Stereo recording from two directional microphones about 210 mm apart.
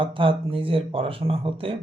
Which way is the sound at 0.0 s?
25° right (ahead or behind).